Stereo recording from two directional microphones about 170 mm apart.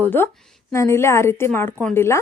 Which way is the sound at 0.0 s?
10° left (ahead or behind).